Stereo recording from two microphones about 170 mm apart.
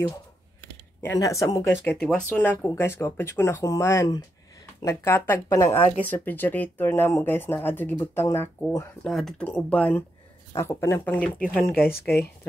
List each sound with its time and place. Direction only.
1.0 s speech: 20° left (ahead or behind)
2.0 s speech: 5° left (ahead or behind)
9.0 s speech: 5° left (ahead or behind)
11.7 s speech: 65° left (ahead or behind)